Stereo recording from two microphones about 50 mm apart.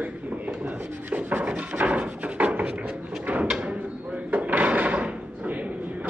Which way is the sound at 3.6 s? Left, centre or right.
Right.